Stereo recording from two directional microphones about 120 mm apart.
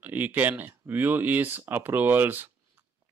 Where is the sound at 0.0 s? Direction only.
15° right (ahead or behind).